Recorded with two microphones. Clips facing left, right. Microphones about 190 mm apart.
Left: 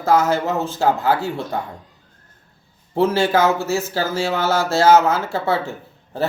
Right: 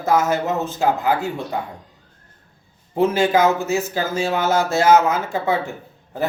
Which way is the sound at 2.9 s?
15° right (ahead or behind).